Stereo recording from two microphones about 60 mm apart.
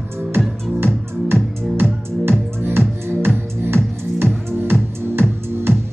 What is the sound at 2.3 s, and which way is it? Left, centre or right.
Music, right.